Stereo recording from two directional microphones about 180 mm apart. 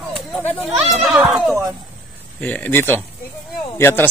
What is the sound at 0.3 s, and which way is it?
Speech, 5° left (ahead or behind).